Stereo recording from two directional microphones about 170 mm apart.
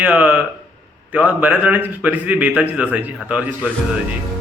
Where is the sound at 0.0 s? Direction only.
10° right (ahead or behind).